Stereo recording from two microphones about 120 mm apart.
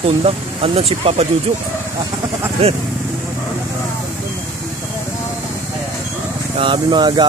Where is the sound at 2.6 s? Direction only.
55° right (ahead or behind).